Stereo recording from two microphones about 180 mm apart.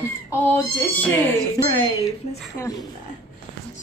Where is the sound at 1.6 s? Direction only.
20° left (ahead or behind).